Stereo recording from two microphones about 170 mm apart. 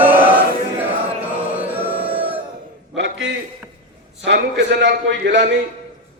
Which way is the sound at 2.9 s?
90° right.